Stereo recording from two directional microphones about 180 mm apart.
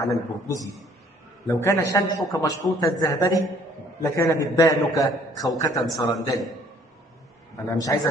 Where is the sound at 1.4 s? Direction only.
15° left (ahead or behind).